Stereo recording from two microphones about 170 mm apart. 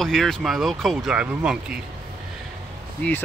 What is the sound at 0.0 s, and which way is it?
Speech, centre (ahead or behind).